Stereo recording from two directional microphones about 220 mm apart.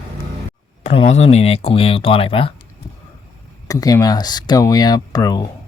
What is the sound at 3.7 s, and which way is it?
Speech, 15° left (ahead or behind).